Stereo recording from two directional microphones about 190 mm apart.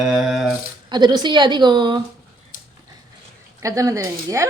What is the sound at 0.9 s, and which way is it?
A woman's voice, 20° right (ahead or behind).